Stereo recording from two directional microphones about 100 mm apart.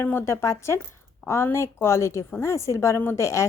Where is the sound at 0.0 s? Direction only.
20° left (ahead or behind).